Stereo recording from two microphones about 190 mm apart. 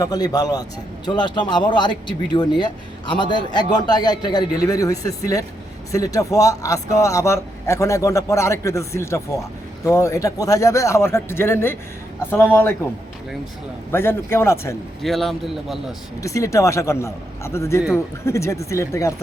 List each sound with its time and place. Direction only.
0.0 s a man's voice: 20° left (ahead or behind)
13.9 s a man's voice: 10° left (ahead or behind)
15.0 s speech: centre (ahead or behind)
16.2 s a man's voice: 15° left (ahead or behind)